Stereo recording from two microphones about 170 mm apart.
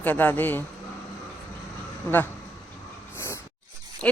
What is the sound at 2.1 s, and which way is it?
Speech, 10° left (ahead or behind).